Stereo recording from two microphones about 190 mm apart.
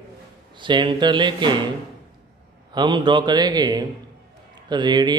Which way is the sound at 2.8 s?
25° right (ahead or behind).